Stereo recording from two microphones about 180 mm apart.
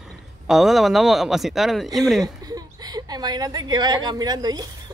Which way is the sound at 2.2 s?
20° right (ahead or behind).